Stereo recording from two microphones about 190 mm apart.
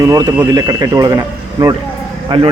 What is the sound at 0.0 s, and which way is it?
Speech, 15° right (ahead or behind).